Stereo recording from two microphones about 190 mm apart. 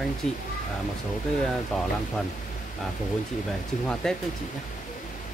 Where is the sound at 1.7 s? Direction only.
5° left (ahead or behind).